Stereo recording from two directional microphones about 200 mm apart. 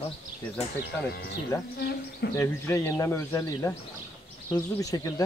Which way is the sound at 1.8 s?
55° left (ahead or behind).